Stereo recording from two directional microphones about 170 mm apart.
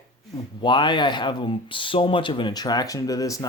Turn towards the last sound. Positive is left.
turn(degrees=20)  # may be behind; listen again after turning